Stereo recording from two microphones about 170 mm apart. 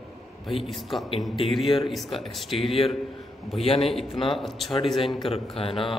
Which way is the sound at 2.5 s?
30° left (ahead or behind).